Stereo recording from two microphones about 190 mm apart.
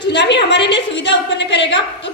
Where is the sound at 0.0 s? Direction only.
65° left (ahead or behind).